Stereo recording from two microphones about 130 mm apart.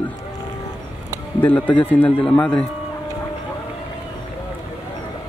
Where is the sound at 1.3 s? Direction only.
10° left (ahead or behind).